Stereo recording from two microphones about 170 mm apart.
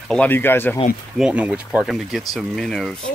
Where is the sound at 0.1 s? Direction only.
10° left (ahead or behind).